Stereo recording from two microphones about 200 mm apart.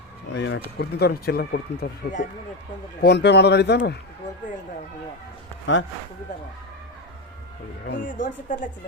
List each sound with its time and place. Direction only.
0.3 s speech: 65° left (ahead or behind)
0.8 s speech: 50° left (ahead or behind)
7.9 s speech: 40° left (ahead or behind)